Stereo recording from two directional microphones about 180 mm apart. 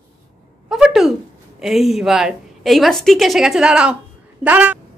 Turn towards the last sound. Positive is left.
turn(degrees=-10)  # may be behind; listen again after turning